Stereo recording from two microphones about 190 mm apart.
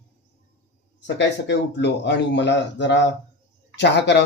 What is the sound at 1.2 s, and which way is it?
Speech, 70° left (ahead or behind).